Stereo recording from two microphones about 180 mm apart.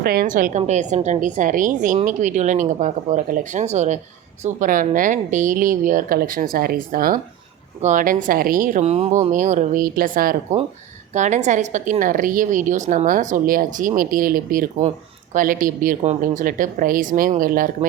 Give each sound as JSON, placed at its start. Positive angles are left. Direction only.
{"t": 0.0, "sound": "a woman's voice", "side_deg": -55}
{"t": 11.1, "sound": "a woman's voice", "side_deg": -40}